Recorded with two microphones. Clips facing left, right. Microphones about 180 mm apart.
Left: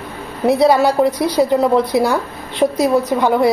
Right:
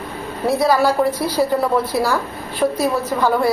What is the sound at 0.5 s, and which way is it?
A woman's voice, 20° left (ahead or behind).